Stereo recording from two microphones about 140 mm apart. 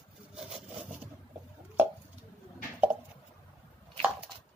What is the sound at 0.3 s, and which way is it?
Wood, 5° right (ahead or behind).